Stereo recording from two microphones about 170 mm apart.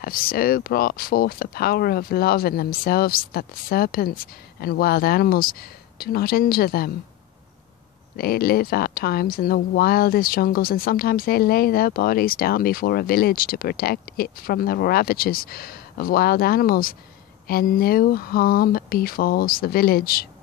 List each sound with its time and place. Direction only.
0.0 s speech: 60° left (ahead or behind)
8.2 s speech: 60° left (ahead or behind)